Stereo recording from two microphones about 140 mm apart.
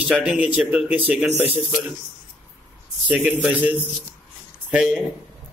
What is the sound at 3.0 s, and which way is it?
Speech, 10° right (ahead or behind).